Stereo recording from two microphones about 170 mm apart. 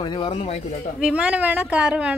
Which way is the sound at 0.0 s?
25° left (ahead or behind).